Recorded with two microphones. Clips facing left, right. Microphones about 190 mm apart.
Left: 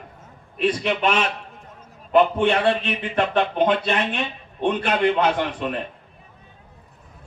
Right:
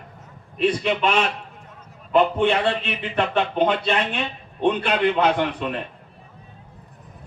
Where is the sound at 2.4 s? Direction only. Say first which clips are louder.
Left 1 dB; 50° left (ahead or behind).